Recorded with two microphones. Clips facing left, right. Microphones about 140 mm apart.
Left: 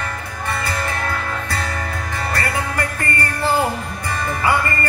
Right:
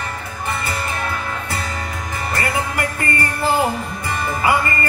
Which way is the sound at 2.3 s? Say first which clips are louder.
Right 2 dB; 20° right (ahead or behind).